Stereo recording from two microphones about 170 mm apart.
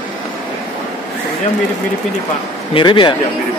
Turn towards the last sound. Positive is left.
turn(degrees=30)  # may be behind; listen again after turning